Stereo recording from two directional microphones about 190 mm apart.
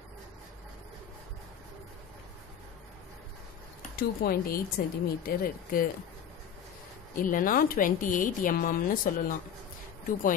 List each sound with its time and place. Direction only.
3.9 s speech: 50° left (ahead or behind)
7.2 s speech: 45° left (ahead or behind)